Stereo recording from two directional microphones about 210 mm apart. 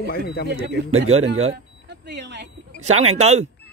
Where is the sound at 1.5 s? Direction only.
55° right (ahead or behind).